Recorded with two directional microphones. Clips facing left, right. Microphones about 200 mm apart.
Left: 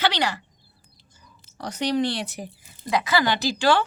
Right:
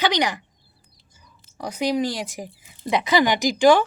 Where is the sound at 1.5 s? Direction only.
10° right (ahead or behind).